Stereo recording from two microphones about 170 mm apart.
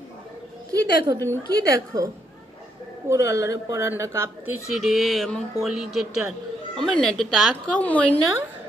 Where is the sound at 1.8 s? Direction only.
20° right (ahead or behind).